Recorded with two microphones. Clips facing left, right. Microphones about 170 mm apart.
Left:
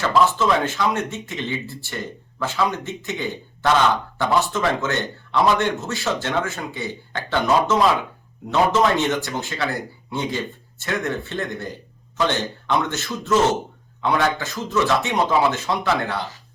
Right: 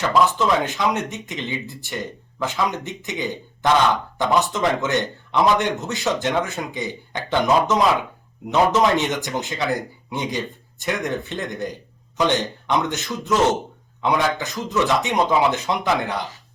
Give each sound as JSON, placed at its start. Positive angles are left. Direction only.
{"t": 0.1, "sound": "a man's voice", "side_deg": -15}